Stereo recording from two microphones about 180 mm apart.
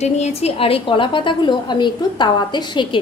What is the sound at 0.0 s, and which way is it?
A woman's voice, 35° left (ahead or behind).